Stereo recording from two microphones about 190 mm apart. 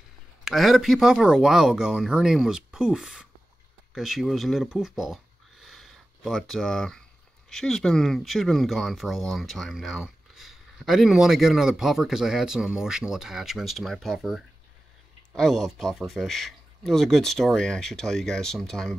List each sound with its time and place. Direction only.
0.5 s speech: centre (ahead or behind)